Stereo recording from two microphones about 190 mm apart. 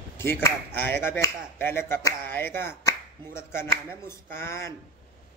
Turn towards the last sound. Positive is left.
turn(degrees=15)  # may be behind; listen again after turning